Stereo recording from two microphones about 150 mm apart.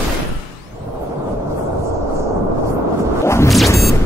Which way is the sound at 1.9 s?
20° right (ahead or behind).